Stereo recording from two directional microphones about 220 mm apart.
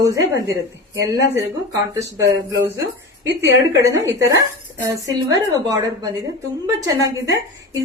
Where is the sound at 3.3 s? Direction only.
50° right (ahead or behind).